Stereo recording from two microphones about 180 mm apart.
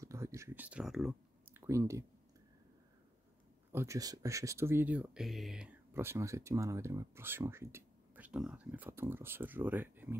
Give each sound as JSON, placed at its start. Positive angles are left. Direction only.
{"t": 0.0, "sound": "a sound", "side_deg": -15}
{"t": 1.5, "sound": "speech", "side_deg": -15}
{"t": 3.7, "sound": "speech", "side_deg": -15}